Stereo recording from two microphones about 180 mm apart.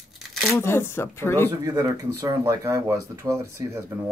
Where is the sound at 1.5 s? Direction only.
15° right (ahead or behind).